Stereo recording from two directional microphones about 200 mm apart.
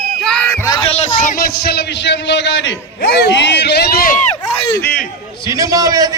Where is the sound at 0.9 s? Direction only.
35° left (ahead or behind); by 4.1 s 55° left (ahead or behind).